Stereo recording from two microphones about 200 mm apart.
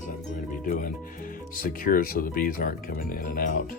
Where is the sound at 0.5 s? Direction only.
40° left (ahead or behind).